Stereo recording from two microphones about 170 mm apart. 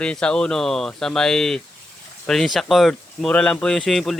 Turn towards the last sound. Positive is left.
turn(degrees=0)  # may be behind; listen again after turning